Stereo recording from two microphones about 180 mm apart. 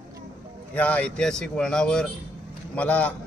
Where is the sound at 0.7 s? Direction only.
10° left (ahead or behind).